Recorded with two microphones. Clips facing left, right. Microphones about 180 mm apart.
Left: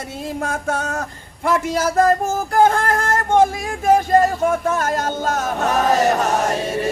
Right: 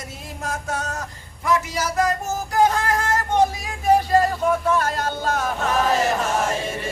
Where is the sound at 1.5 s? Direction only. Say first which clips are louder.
Left 4 dB; 55° left (ahead or behind); by 6.6 s 40° left (ahead or behind).